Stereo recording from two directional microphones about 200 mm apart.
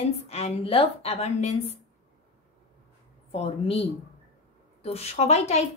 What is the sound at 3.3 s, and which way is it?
A woman's voice, 30° left (ahead or behind).